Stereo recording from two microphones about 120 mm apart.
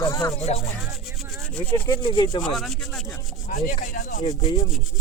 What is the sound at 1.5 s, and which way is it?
Speech, 10° left (ahead or behind).